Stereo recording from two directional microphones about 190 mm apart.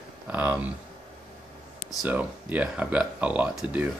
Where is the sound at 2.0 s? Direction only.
10° right (ahead or behind).